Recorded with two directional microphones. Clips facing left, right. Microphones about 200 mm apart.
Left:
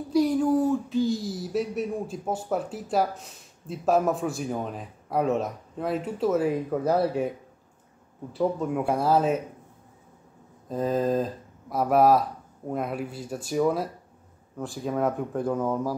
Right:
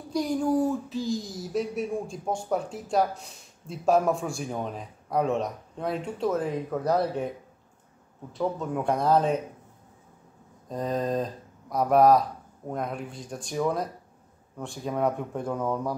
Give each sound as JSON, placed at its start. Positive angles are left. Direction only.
{"t": 0.1, "sound": "speech", "side_deg": 0}
{"t": 8.3, "sound": "speech", "side_deg": 5}
{"t": 10.7, "sound": "speech", "side_deg": 5}